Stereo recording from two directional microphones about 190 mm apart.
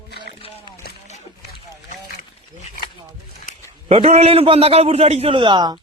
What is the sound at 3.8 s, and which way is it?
A man's voice, 35° right (ahead or behind).